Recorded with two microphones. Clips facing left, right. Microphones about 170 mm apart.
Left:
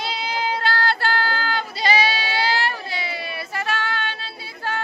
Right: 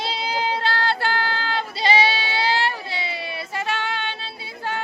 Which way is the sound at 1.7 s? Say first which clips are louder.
Right 1 dB; 25° right (ahead or behind).